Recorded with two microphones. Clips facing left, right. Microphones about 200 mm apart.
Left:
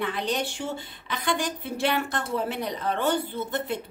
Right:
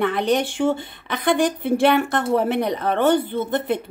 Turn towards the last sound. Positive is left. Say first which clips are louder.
# right 7 dB
turn(degrees=-55)  # may be behind; listen again after turning